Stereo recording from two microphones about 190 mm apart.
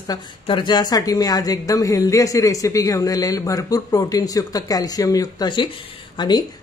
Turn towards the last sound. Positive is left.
turn(degrees=20)  # may be behind; listen again after turning